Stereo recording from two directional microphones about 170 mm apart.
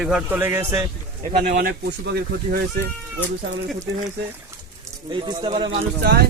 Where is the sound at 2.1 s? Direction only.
70° right (ahead or behind).